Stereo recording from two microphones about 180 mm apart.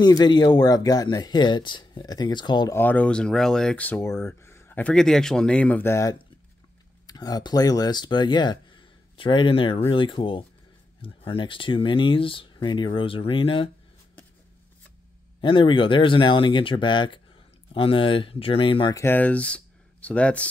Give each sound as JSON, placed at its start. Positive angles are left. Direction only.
{"t": 0.0, "sound": "speech", "side_deg": 25}
{"t": 2.8, "sound": "speech", "side_deg": 10}
{"t": 15.4, "sound": "speech", "side_deg": 30}
{"t": 18.9, "sound": "speech", "side_deg": 10}